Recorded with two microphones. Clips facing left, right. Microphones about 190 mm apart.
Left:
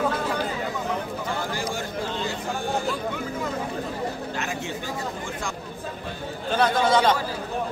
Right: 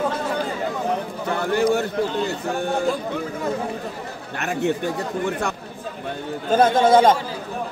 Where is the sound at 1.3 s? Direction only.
60° right (ahead or behind).